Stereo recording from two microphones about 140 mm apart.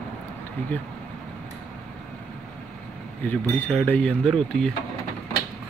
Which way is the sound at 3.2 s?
10° left (ahead or behind).